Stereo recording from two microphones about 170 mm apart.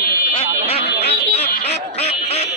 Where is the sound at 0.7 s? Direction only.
35° left (ahead or behind).